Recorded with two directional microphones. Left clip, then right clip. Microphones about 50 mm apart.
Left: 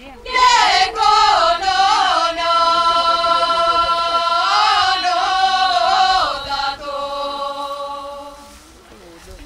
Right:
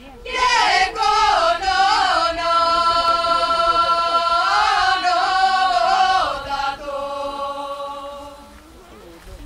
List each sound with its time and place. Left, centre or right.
0.4 s music: left
6.9 s chant: centre